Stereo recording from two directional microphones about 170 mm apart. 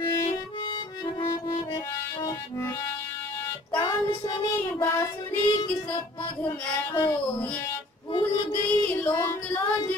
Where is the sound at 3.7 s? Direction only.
25° left (ahead or behind).